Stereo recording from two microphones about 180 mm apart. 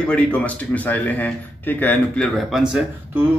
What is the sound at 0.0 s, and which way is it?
A man's voice, 5° left (ahead or behind).